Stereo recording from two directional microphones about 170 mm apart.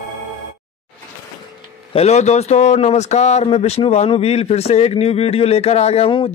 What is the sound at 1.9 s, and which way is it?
Speech, 40° left (ahead or behind).